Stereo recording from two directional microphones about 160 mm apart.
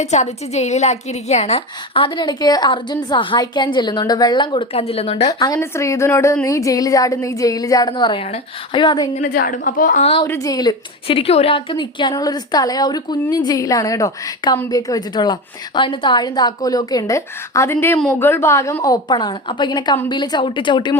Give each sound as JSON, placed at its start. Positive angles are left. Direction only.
{"t": 0.0, "sound": "a woman's voice", "side_deg": 45}
{"t": 5.3, "sound": "a woman's voice", "side_deg": 20}
{"t": 9.1, "sound": "a woman's voice", "side_deg": 60}
{"t": 10.0, "sound": "a woman's voice", "side_deg": 40}
{"t": 10.2, "sound": "a woman's voice", "side_deg": 20}